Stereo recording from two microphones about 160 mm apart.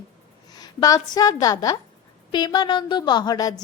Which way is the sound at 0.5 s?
25° left (ahead or behind).